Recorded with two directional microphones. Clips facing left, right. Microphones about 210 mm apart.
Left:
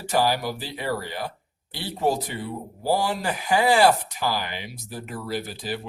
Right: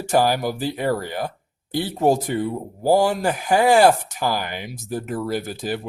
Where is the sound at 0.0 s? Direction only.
45° right (ahead or behind).